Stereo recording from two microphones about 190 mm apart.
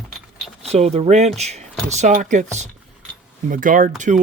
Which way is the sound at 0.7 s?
35° right (ahead or behind).